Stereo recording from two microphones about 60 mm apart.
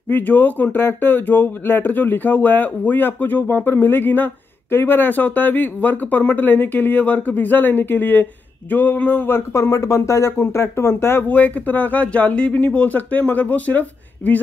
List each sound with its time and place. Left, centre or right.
0.1 s speech: left
9.5 s speech: left
11.2 s speech: left